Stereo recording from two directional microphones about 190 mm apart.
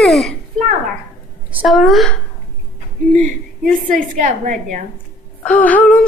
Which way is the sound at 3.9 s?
45° right (ahead or behind).